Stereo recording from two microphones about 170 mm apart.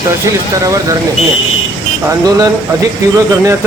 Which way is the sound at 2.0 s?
20° right (ahead or behind).